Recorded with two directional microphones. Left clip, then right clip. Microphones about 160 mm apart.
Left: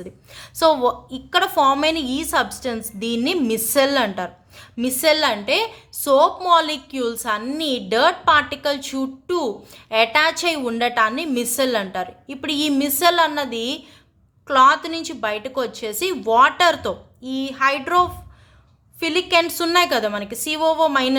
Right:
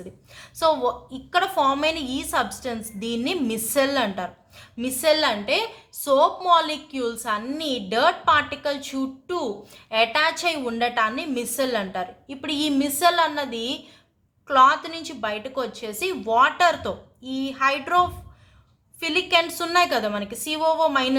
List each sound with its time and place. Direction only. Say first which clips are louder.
0.3 s a woman's voice: left 4 dB; 40° left (ahead or behind)